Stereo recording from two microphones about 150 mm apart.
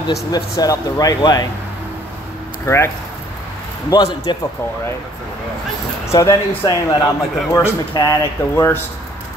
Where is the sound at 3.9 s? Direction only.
25° left (ahead or behind).